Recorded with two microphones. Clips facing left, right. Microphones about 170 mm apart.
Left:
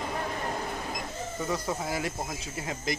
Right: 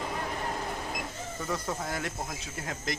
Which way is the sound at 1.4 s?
5° left (ahead or behind).